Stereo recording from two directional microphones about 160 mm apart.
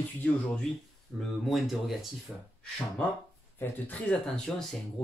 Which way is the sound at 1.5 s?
Centre (ahead or behind).